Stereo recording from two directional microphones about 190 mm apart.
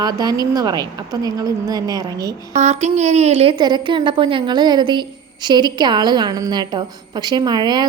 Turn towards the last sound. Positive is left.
turn(degrees=-20)  # may be behind; listen again after turning